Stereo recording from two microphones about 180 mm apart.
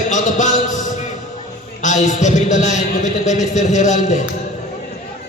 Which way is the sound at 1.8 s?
40° left (ahead or behind).